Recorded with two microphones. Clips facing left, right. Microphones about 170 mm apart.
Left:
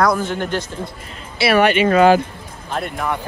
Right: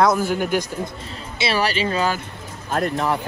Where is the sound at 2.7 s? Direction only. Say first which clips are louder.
Right 3 dB; 45° right (ahead or behind).